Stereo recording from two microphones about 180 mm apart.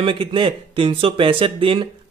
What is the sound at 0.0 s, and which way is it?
Speech, 30° right (ahead or behind).